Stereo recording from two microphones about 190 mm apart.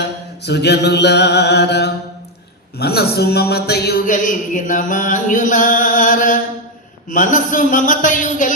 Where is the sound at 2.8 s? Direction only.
55° left (ahead or behind).